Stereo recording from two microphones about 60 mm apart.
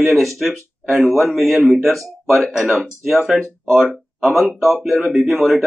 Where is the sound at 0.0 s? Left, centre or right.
Centre.